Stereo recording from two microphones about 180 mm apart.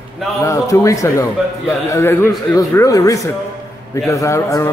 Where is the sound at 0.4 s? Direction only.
15° left (ahead or behind).